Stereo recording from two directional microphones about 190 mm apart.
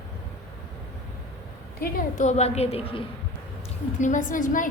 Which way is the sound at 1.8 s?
40° left (ahead or behind).